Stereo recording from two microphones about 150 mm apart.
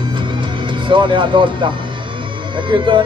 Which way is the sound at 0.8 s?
35° right (ahead or behind).